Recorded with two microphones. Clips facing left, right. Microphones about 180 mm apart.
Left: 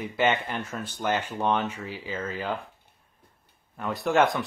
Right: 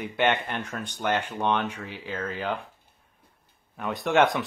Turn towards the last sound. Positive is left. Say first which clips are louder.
# right 1 dB
turn(degrees=0)  # may be behind; listen again after turning